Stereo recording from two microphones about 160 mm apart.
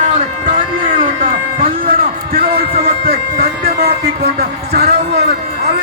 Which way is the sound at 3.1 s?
70° right (ahead or behind).